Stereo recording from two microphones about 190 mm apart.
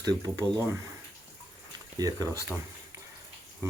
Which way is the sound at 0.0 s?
20° right (ahead or behind).